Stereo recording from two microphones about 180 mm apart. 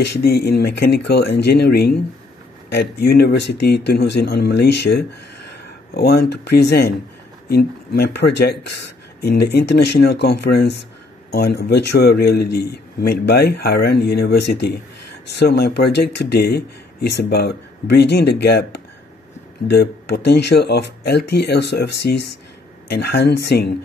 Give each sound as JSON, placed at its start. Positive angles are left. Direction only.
{"t": 0.0, "sound": "speech", "side_deg": 65}